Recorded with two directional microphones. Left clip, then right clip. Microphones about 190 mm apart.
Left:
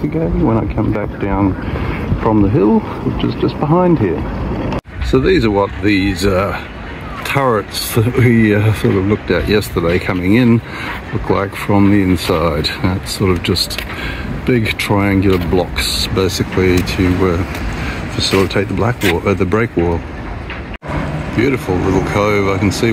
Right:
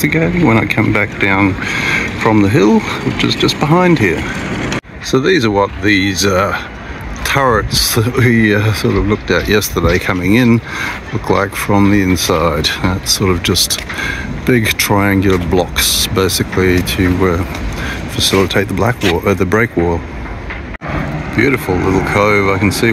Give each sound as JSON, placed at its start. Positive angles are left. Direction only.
{"t": 0.0, "sound": "speech", "side_deg": -20}
{"t": 5.1, "sound": "speech", "side_deg": 5}
{"t": 14.0, "sound": "speech", "side_deg": -10}
{"t": 21.4, "sound": "speech", "side_deg": 0}